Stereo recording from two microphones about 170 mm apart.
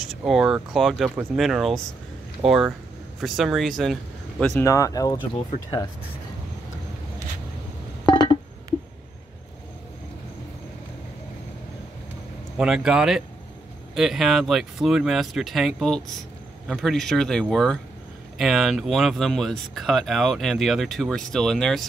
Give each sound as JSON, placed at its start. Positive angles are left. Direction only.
{"t": 0.0, "sound": "speech", "side_deg": 0}
{"t": 4.6, "sound": "speech", "side_deg": 20}
{"t": 8.1, "sound": "a sound", "side_deg": 30}
{"t": 12.5, "sound": "speech", "side_deg": -5}